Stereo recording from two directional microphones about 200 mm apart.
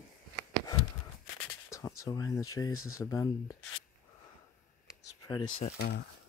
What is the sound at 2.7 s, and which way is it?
Speech, 90° left.